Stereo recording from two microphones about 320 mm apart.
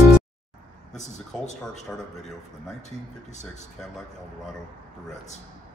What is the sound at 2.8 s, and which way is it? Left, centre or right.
Speech, left.